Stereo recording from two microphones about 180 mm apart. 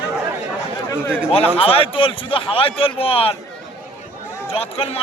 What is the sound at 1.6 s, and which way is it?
A man's voice, 30° left (ahead or behind).